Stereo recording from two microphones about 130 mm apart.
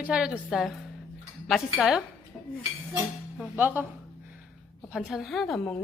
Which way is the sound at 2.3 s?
Centre (ahead or behind).